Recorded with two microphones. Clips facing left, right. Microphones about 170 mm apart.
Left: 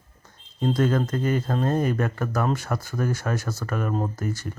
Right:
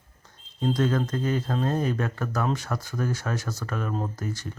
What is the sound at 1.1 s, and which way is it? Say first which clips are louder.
Speech: left 2 dB; 55° left (ahead or behind).